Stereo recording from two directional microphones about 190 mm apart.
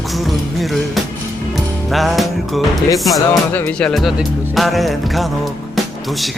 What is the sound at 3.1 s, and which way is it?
Speech, 10° left (ahead or behind).